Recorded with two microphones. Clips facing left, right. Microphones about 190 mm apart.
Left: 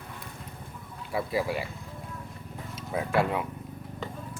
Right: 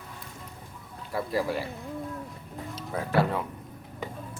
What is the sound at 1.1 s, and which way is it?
Speech, 5° left (ahead or behind).